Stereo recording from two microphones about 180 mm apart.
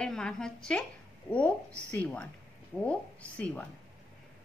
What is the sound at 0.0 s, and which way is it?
A woman's voice, 5° left (ahead or behind).